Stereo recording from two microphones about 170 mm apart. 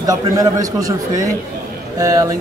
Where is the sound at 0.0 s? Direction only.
20° right (ahead or behind).